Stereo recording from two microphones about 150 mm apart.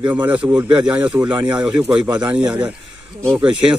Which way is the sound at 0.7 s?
25° right (ahead or behind).